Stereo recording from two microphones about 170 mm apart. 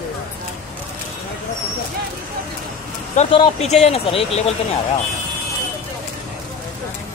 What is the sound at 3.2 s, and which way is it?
Speech, 35° left (ahead or behind).